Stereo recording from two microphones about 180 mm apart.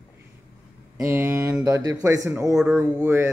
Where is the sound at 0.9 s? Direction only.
10° right (ahead or behind).